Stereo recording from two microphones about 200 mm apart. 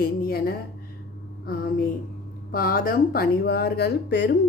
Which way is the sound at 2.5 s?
45° left (ahead or behind).